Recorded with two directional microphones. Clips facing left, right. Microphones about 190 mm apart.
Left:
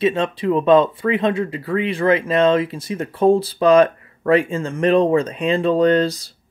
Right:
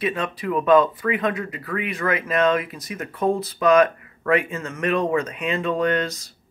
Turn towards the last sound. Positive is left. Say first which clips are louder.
# left 7 dB
turn(degrees=30)  # may be behind; listen again after turning